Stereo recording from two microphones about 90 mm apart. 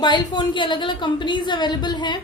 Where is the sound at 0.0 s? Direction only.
55° left (ahead or behind).